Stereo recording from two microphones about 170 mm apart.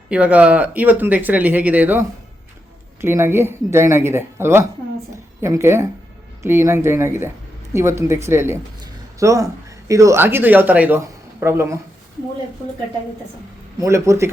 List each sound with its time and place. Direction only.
0.1 s speech: 10° right (ahead or behind)
13.7 s speech: 15° right (ahead or behind)